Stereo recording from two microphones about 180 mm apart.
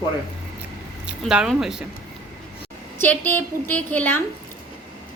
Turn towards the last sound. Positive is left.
turn(degrees=10)  # may be behind; listen again after turning